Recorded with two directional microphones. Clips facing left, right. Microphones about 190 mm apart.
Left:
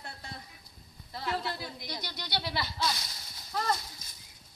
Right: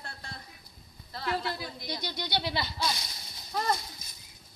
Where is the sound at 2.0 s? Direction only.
20° right (ahead or behind).